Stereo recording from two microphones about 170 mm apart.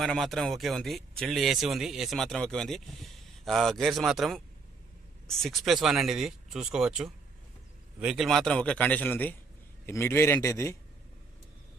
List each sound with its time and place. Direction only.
0.0 s a man's voice: centre (ahead or behind); by 10.8 s 15° left (ahead or behind)